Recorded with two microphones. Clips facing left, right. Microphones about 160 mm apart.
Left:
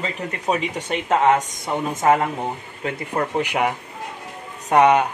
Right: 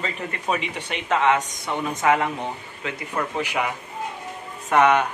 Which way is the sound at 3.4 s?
55° left (ahead or behind).